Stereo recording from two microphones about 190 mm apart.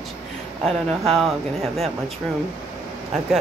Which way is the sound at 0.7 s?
Centre (ahead or behind).